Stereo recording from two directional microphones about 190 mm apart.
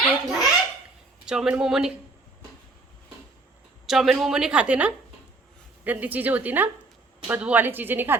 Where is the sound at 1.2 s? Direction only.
5° right (ahead or behind).